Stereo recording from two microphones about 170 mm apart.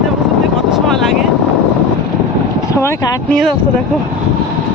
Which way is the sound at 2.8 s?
15° left (ahead or behind).